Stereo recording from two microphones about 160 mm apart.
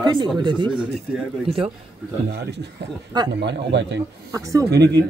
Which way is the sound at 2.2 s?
90° right.